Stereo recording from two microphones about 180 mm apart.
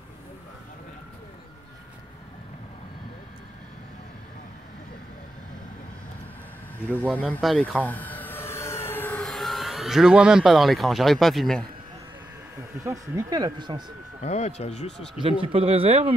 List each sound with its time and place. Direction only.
7.2 s vehicle: 5° left (ahead or behind)
12.8 s speech: 15° right (ahead or behind)
14.2 s speech: 40° left (ahead or behind)
14.9 s speech: 5° left (ahead or behind)
15.4 s speech: 30° right (ahead or behind)